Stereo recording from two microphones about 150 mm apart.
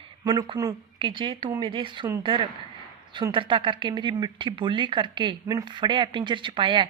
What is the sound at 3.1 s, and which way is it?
A woman's voice, 35° right (ahead or behind).